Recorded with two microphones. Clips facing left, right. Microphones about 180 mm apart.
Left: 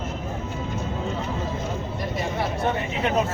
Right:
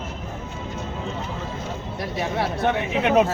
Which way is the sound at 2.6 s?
70° right (ahead or behind).